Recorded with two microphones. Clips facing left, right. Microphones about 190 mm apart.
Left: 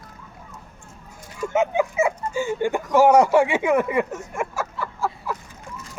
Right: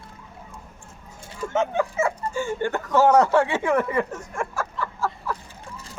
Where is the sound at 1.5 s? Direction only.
10° left (ahead or behind).